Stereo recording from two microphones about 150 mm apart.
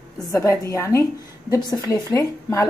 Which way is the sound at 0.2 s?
25° left (ahead or behind).